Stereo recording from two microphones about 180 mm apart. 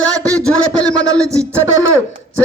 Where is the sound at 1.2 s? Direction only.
15° right (ahead or behind).